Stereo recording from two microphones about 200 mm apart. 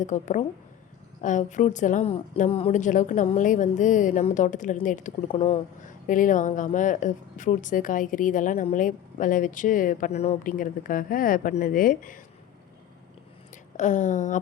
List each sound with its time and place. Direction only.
0.0 s speech: 35° left (ahead or behind)
13.7 s speech: 40° left (ahead or behind)